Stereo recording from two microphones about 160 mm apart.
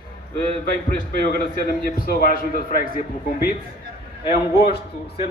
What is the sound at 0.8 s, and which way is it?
A man's voice, 70° left (ahead or behind).